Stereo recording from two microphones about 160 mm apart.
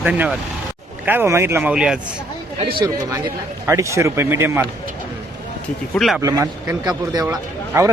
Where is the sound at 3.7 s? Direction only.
20° right (ahead or behind).